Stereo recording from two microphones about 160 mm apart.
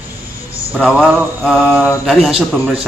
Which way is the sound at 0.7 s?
5° right (ahead or behind).